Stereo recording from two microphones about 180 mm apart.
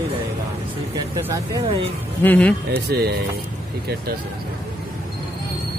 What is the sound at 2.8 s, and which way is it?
Speech, 60° right (ahead or behind).